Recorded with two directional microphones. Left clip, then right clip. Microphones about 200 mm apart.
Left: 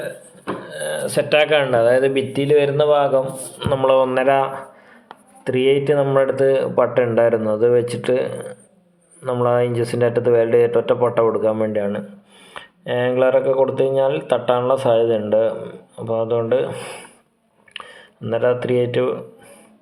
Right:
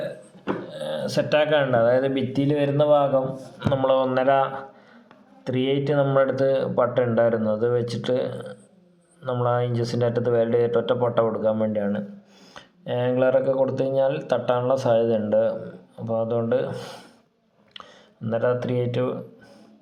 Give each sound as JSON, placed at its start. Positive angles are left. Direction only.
{"t": 0.7, "sound": "a sound", "side_deg": 30}
{"t": 1.5, "sound": "speech", "side_deg": 25}
{"t": 18.2, "sound": "speech", "side_deg": 25}